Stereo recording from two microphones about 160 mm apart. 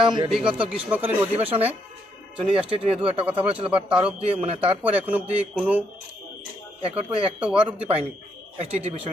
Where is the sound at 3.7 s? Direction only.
10° right (ahead or behind).